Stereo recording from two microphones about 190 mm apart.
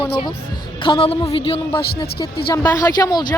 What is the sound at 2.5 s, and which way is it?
Speech, 20° left (ahead or behind).